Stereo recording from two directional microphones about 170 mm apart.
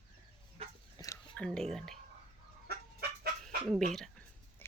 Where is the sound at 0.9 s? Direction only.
20° left (ahead or behind).